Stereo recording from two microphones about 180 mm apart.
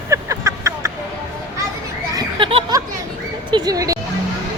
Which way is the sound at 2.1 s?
30° right (ahead or behind).